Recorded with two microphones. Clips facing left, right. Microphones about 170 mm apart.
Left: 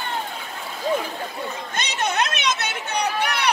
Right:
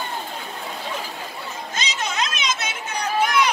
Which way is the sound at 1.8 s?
60° left (ahead or behind).